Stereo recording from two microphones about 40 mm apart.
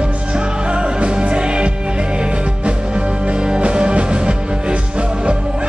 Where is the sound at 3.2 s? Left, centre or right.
Right.